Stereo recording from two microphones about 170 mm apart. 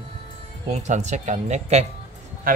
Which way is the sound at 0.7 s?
45° right (ahead or behind).